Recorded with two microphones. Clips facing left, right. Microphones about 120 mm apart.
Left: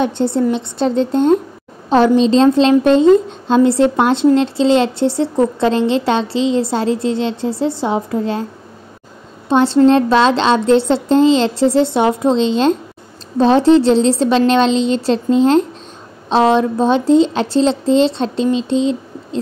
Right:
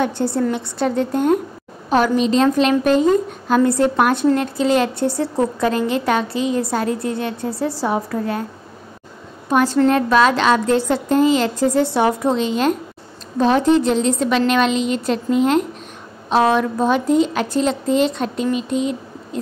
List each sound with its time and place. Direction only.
0.0 s a woman's voice: 20° left (ahead or behind)
9.5 s a woman's voice: 25° left (ahead or behind)